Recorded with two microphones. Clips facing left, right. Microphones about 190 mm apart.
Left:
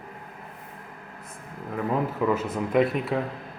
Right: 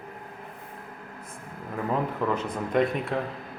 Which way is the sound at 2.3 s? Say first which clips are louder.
Left 3 dB; 5° left (ahead or behind).